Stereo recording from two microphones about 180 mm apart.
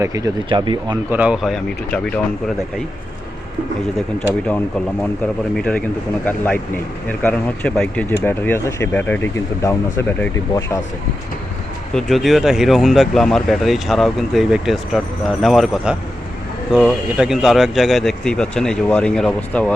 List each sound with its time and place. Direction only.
0.0 s speech: 20° right (ahead or behind)
1.1 s speech: 5° right (ahead or behind)
4.2 s speech: 5° left (ahead or behind)
11.9 s speech: centre (ahead or behind)